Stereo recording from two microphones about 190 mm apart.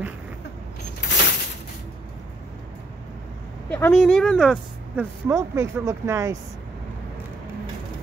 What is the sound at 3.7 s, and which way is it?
Speech, 5° left (ahead or behind).